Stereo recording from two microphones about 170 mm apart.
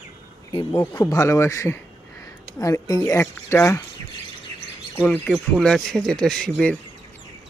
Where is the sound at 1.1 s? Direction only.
15° left (ahead or behind).